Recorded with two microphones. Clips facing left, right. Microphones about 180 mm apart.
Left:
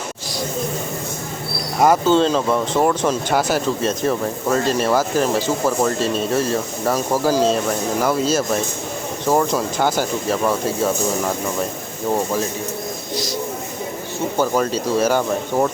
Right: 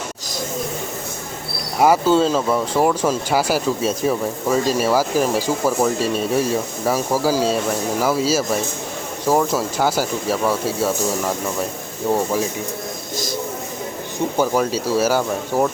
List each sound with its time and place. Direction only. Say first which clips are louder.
1.8 s speech: even; 5° right (ahead or behind)
12.1 s speech: right 1 dB; 10° right (ahead or behind)
14.3 s speech: even; 10° right (ahead or behind)